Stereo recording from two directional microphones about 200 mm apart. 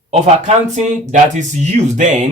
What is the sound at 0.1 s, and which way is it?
Speech, 35° right (ahead or behind).